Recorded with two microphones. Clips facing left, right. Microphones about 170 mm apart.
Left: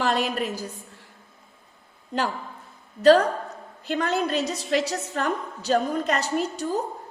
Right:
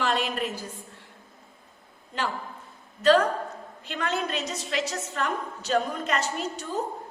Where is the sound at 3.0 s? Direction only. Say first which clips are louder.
Left 4 dB; 40° left (ahead or behind).